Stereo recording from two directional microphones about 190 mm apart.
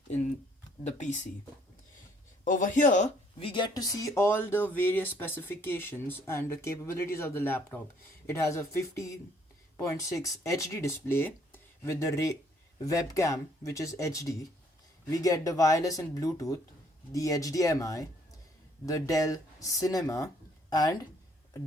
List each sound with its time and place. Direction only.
0.9 s speech: 40° left (ahead or behind)
2.4 s speech: 45° left (ahead or behind); by 21.1 s 20° left (ahead or behind)